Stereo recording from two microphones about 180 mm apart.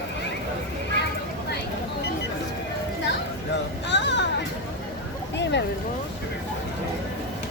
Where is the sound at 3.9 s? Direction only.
80° left.